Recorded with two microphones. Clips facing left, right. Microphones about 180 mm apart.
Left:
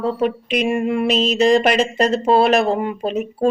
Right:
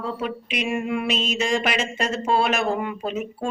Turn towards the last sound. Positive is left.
turn(degrees=35)  # may be behind; listen again after turning